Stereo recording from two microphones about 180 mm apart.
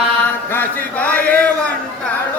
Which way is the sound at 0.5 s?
10° left (ahead or behind).